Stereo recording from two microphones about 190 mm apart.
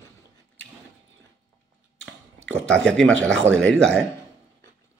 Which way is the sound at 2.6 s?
5° left (ahead or behind).